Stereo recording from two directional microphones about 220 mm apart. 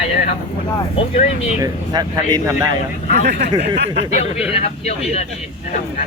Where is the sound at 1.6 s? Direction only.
15° right (ahead or behind).